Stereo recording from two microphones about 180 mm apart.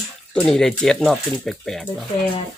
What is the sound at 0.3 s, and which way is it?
Speech, 5° left (ahead or behind).